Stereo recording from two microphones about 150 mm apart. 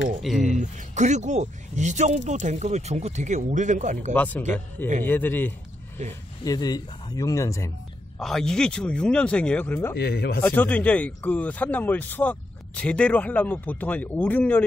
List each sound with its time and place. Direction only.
0.2 s speech: centre (ahead or behind)
0.5 s speech: 55° right (ahead or behind)
4.1 s speech: 10° left (ahead or behind)
6.4 s speech: 25° left (ahead or behind)
8.2 s speech: 5° left (ahead or behind)
9.9 s speech: 90° left
10.4 s speech: 10° left (ahead or behind)